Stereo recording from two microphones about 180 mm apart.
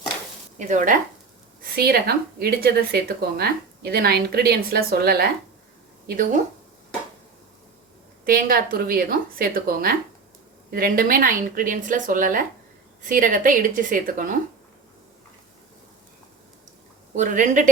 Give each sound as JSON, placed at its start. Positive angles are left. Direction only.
{"t": 0.7, "sound": "a woman's voice", "side_deg": -45}
{"t": 1.7, "sound": "speech", "side_deg": -60}
{"t": 8.2, "sound": "a woman's voice", "side_deg": -50}
{"t": 17.2, "sound": "a woman's voice", "side_deg": -45}